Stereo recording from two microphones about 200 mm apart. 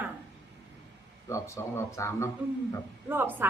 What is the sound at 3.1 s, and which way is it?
Speech, 10° right (ahead or behind).